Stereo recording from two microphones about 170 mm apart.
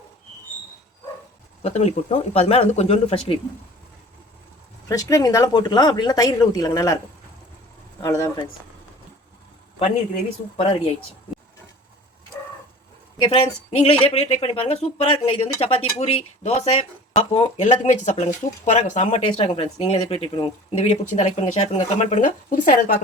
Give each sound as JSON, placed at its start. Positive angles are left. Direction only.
{"t": 1.6, "sound": "speech", "side_deg": 40}
{"t": 4.9, "sound": "speech", "side_deg": 20}
{"t": 8.0, "sound": "speech", "side_deg": 20}
{"t": 10.6, "sound": "speech", "side_deg": 35}
{"t": 13.2, "sound": "speech", "side_deg": 35}
{"t": 17.6, "sound": "speech", "side_deg": 45}